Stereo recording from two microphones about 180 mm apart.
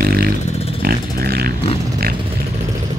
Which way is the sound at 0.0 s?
55° right (ahead or behind).